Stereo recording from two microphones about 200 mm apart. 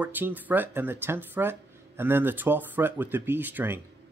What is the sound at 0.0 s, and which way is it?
Speech, 10° right (ahead or behind).